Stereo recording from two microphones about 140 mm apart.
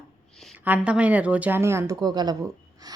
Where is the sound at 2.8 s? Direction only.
25° right (ahead or behind).